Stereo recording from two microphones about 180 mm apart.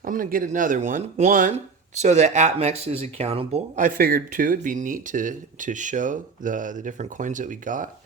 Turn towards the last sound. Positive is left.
turn(degrees=-45)  # may be behind; listen again after turning